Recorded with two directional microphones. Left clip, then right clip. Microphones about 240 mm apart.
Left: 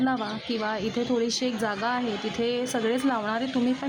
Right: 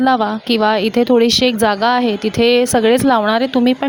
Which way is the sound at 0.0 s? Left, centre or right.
Right.